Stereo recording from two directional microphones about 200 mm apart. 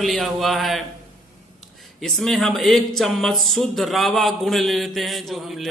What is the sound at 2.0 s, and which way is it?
Speech, centre (ahead or behind).